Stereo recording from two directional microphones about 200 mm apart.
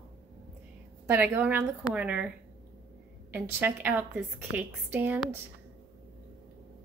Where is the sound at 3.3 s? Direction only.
10° right (ahead or behind).